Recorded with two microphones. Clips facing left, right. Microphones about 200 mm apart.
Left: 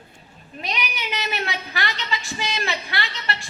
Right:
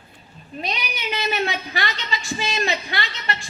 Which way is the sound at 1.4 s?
25° right (ahead or behind).